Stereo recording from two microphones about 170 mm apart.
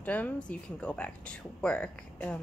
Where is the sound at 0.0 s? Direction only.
10° left (ahead or behind).